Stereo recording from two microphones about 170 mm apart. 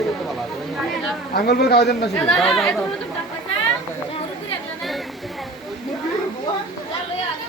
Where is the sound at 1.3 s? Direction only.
65° left (ahead or behind).